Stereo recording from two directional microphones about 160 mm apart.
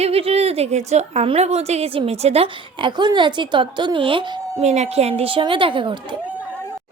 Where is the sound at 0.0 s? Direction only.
40° right (ahead or behind).